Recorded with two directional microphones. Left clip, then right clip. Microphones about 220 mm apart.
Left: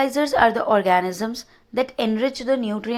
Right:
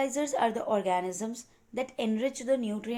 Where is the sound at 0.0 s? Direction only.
20° left (ahead or behind).